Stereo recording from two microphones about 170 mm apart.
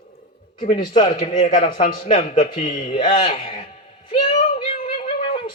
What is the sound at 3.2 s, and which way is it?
Speech, 30° left (ahead or behind).